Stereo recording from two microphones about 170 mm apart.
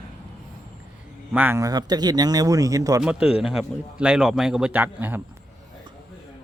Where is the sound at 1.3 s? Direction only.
15° right (ahead or behind).